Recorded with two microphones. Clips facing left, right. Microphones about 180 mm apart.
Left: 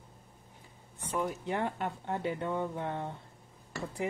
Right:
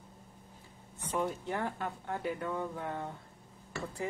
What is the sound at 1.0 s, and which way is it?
Speech, 10° left (ahead or behind).